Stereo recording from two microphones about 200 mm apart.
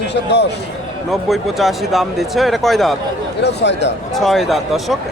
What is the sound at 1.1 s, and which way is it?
Speech, centre (ahead or behind).